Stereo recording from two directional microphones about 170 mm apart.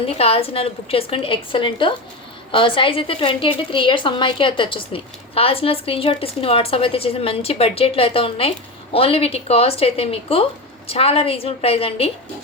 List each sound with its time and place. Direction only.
0.2 s a woman's voice: 35° left (ahead or behind)